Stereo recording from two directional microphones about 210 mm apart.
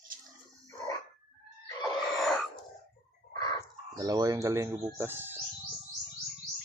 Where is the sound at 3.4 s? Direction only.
20° left (ahead or behind).